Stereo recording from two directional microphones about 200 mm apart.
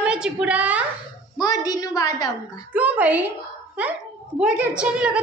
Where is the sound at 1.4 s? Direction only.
20° left (ahead or behind).